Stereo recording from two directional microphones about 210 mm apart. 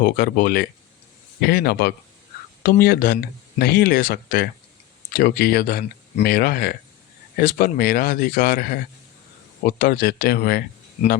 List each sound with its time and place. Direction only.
0.0 s speech: 45° left (ahead or behind)